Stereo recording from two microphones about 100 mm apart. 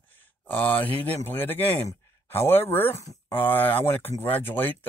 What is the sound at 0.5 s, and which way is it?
Speech, 20° left (ahead or behind).